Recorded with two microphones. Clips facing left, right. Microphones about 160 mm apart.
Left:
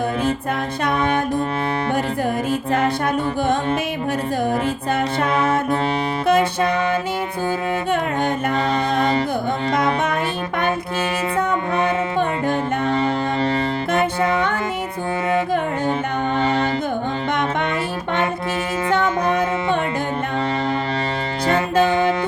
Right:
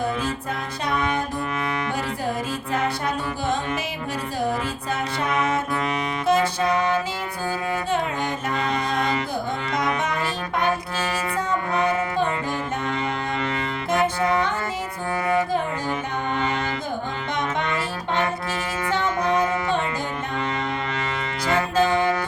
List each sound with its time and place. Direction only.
5.3 s music: 30° left (ahead or behind)
6.2 s music: 55° left (ahead or behind)
9.0 s music: 30° left (ahead or behind)
9.7 s music: 55° left (ahead or behind)
11.7 s music: 25° left (ahead or behind)
16.4 s music: 35° left (ahead or behind)
21.4 s music: 25° left (ahead or behind)